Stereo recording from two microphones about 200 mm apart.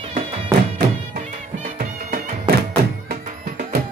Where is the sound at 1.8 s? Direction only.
50° right (ahead or behind).